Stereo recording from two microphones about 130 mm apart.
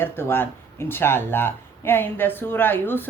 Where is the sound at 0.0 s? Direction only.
15° left (ahead or behind).